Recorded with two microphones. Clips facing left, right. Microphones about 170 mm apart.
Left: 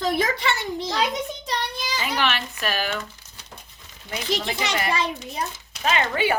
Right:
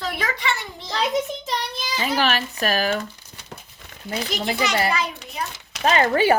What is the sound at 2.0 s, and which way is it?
Speech, 40° right (ahead or behind).